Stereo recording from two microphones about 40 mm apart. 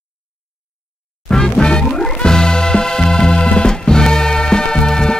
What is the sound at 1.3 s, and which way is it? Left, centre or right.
Music, centre.